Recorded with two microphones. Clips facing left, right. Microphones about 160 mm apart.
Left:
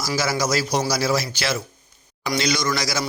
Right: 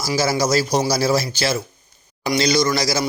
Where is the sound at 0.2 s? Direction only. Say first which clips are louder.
Right 5 dB; 30° right (ahead or behind).